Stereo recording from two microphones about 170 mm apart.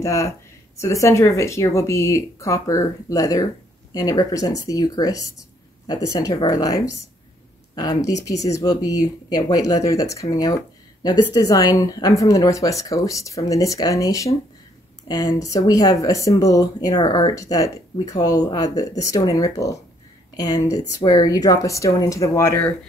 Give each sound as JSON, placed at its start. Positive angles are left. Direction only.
{"t": 0.0, "sound": "speech", "side_deg": 15}